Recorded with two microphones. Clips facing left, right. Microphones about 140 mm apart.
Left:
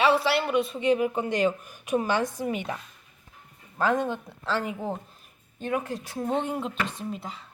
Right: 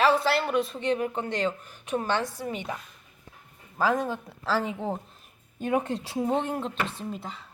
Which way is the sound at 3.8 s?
5° right (ahead or behind).